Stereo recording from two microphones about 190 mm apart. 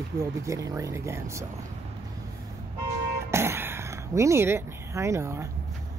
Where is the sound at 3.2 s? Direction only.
15° right (ahead or behind).